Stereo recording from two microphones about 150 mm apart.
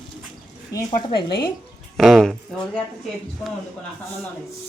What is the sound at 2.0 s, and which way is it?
Speech, centre (ahead or behind).